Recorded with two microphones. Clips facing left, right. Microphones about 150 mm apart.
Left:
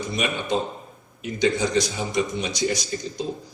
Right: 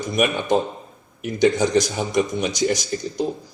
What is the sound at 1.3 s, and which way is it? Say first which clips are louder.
Speech: right 4 dB; 45° right (ahead or behind).